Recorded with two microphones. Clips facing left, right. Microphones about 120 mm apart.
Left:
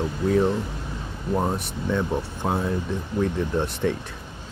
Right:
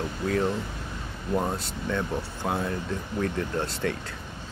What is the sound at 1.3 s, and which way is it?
Speech, 20° left (ahead or behind).